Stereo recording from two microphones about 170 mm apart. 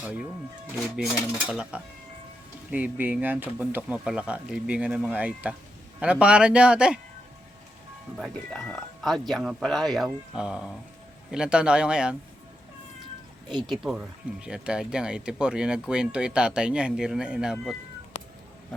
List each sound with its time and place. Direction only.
0.0 s speech: 5° right (ahead or behind)
1.5 s speech: centre (ahead or behind)
8.1 s speech: centre (ahead or behind)
13.7 s speech: centre (ahead or behind)